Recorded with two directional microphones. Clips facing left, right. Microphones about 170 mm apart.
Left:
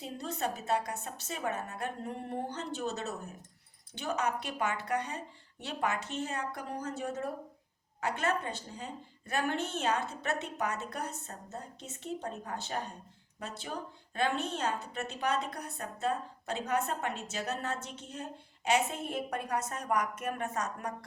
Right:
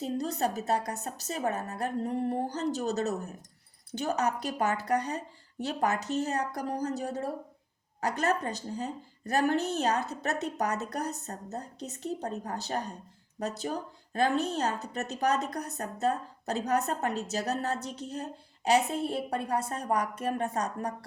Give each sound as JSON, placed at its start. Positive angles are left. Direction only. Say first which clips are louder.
{"t": 0.0, "sound": "a woman's voice", "louder": "right 6 dB", "side_deg": -40}